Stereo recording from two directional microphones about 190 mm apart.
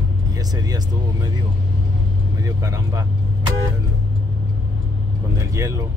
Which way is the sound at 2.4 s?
15° right (ahead or behind).